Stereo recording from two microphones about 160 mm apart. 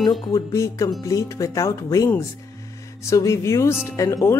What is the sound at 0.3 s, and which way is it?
Speech, 20° left (ahead or behind).